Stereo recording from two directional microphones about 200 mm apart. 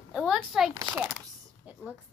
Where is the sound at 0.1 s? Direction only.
Centre (ahead or behind).